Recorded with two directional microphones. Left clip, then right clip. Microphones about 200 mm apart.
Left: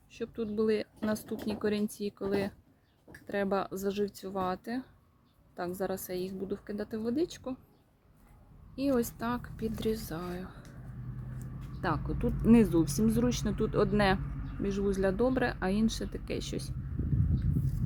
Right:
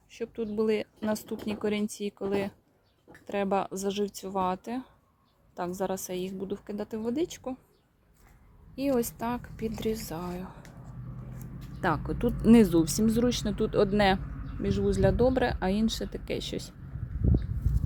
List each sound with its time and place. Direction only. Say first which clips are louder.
0.1 s speech: right 2 dB; 10° right (ahead or behind)
8.7 s a woman's voice: right 2 dB; 15° right (ahead or behind)
11.8 s speech: right 5 dB; 25° right (ahead or behind); by 16.7 s 10° right (ahead or behind)